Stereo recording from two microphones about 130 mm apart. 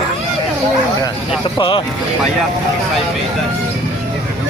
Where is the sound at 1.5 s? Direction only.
40° left (ahead or behind).